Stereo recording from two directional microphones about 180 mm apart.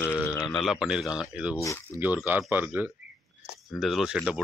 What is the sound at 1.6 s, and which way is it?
Speech, 15° left (ahead or behind).